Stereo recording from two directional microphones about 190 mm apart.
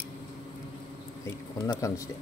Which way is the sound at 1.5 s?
20° left (ahead or behind).